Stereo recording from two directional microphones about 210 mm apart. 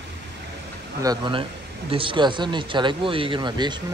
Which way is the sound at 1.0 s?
20° right (ahead or behind).